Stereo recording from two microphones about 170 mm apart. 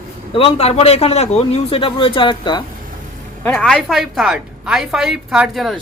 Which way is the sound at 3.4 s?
5° left (ahead or behind).